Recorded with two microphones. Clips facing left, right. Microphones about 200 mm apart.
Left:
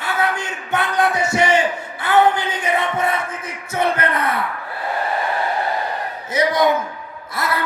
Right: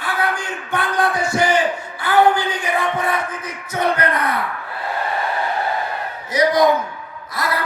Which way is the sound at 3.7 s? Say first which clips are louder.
Even; 25° left (ahead or behind).